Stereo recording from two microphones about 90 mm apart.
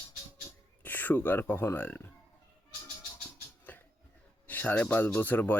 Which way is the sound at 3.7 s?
20° left (ahead or behind).